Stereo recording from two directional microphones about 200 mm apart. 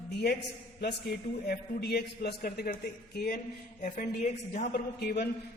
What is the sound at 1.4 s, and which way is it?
A man's voice, 55° left (ahead or behind).